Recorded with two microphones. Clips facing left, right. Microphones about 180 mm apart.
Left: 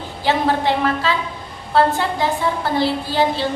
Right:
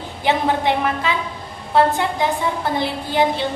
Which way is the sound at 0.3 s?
20° right (ahead or behind).